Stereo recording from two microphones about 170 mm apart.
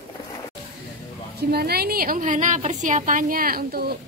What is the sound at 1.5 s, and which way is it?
A woman's voice, 65° right (ahead or behind).